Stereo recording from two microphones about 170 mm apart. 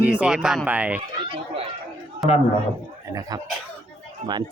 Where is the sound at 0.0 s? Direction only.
10° right (ahead or behind).